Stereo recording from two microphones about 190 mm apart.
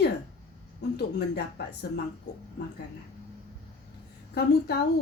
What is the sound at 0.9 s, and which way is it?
Speech, 60° left (ahead or behind).